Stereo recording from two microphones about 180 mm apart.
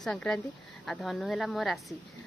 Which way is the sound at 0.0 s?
5° left (ahead or behind).